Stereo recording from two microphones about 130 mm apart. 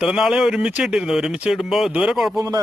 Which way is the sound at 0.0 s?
5° right (ahead or behind).